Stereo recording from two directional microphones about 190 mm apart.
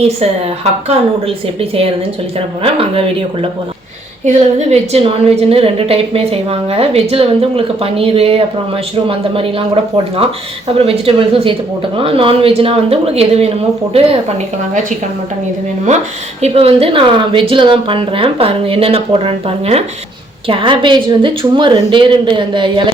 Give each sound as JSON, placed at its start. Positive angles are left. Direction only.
{"t": 0.2, "sound": "a woman's voice", "side_deg": -35}
{"t": 2.6, "sound": "a woman's voice", "side_deg": -30}
{"t": 10.8, "sound": "a woman's voice", "side_deg": -30}
{"t": 16.4, "sound": "a woman's voice", "side_deg": -30}